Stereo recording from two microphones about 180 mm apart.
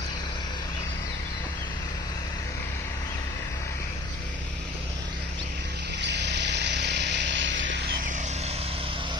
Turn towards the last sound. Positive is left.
turn(degrees=-85)